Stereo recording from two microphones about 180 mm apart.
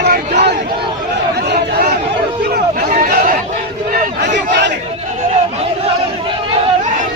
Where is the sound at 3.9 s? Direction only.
70° right (ahead or behind).